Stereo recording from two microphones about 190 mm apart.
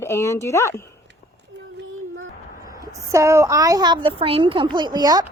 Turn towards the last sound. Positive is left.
turn(degrees=-20)  # may be behind; listen again after turning